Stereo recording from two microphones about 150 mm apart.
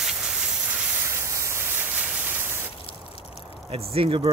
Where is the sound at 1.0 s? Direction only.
15° right (ahead or behind).